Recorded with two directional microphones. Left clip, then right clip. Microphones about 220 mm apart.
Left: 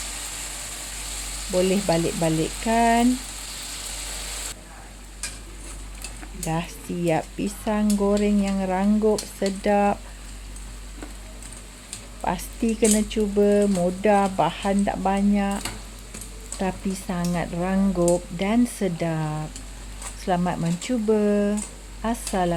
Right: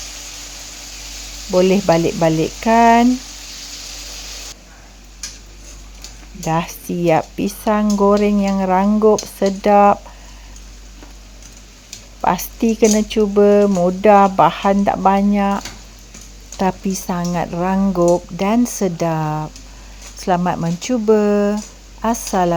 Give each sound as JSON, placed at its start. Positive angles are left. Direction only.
{"t": 1.7, "sound": "frying", "side_deg": -20}
{"t": 6.4, "sound": "speech", "side_deg": -20}
{"t": 12.2, "sound": "speech", "side_deg": -15}
{"t": 22.0, "sound": "frying", "side_deg": -20}